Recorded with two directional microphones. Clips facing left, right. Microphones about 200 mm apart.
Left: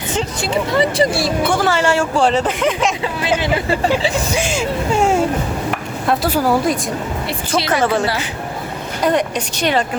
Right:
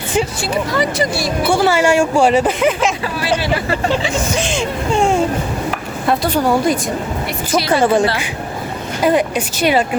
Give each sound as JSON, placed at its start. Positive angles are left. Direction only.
{"t": 0.4, "sound": "speech", "side_deg": 25}
{"t": 1.5, "sound": "speech", "side_deg": -10}
{"t": 3.2, "sound": "speech", "side_deg": 20}
{"t": 4.4, "sound": "a sound", "side_deg": 5}
{"t": 6.1, "sound": "a woman's voice", "side_deg": 5}
{"t": 7.7, "sound": "speech", "side_deg": -15}